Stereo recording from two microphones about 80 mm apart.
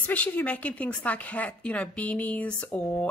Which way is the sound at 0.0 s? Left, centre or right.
Centre.